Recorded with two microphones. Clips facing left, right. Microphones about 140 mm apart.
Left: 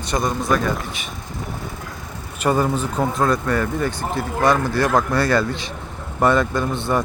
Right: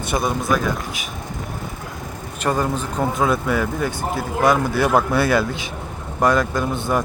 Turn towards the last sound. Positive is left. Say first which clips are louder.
# even
turn(degrees=-5)  # may be behind; listen again after turning